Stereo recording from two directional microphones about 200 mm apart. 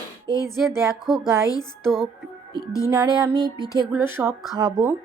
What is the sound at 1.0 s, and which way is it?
Speech, centre (ahead or behind).